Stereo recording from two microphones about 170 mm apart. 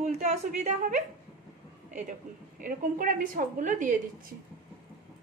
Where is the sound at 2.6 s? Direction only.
55° right (ahead or behind).